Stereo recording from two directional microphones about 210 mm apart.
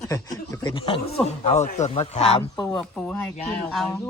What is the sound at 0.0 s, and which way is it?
Speech, 15° left (ahead or behind).